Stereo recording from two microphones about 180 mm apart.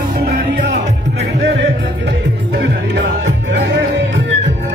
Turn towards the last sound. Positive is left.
turn(degrees=-80)